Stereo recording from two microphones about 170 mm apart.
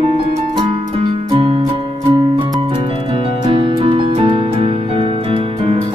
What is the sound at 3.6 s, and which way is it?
Music, 30° right (ahead or behind).